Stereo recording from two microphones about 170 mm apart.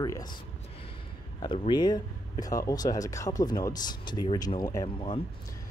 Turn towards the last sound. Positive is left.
turn(degrees=25)  # may be behind; listen again after turning